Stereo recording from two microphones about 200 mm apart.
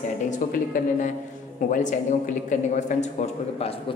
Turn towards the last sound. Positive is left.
turn(degrees=40)  # may be behind; listen again after turning